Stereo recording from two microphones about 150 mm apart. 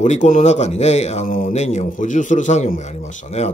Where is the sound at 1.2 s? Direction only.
70° left (ahead or behind).